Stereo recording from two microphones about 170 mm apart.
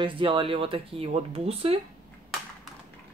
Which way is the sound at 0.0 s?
30° right (ahead or behind).